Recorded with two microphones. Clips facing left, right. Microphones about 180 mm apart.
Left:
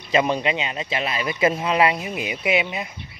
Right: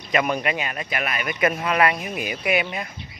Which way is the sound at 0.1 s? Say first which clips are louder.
Left 2 dB; 25° left (ahead or behind).